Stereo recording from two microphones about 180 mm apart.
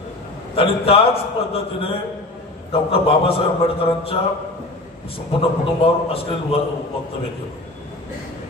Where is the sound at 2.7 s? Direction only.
30° left (ahead or behind).